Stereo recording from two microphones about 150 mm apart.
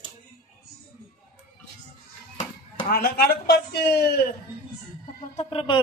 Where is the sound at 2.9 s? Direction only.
85° left.